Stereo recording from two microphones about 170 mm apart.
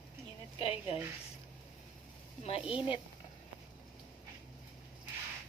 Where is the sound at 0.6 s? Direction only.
35° left (ahead or behind).